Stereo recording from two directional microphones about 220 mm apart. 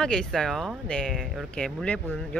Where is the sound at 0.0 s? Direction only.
5° left (ahead or behind).